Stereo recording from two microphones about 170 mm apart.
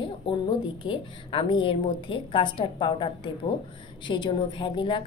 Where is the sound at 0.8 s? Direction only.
30° left (ahead or behind).